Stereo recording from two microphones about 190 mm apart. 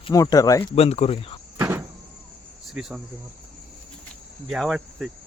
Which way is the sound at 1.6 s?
10° right (ahead or behind).